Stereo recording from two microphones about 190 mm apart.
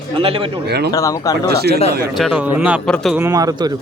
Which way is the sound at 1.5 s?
55° right (ahead or behind).